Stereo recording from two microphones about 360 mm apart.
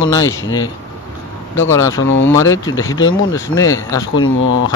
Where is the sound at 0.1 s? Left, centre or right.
Centre.